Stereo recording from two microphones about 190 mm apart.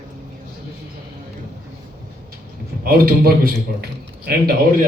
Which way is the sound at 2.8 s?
50° right (ahead or behind).